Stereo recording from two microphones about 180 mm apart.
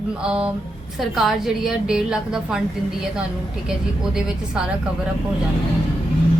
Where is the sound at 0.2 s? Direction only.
5° right (ahead or behind).